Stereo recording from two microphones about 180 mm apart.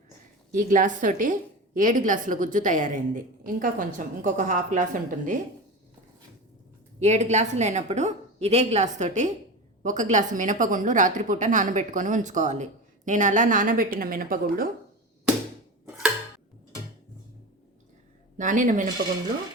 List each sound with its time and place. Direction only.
0.5 s a woman's voice: 45° right (ahead or behind)
7.0 s a woman's voice: 40° right (ahead or behind)
18.3 s a woman's voice: 45° right (ahead or behind)